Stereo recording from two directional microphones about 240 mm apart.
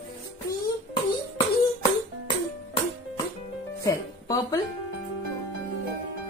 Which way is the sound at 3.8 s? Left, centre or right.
Centre.